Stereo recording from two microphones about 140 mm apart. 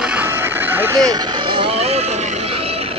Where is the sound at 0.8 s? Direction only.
25° right (ahead or behind).